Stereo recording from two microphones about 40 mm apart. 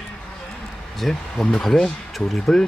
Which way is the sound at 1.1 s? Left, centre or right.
Centre.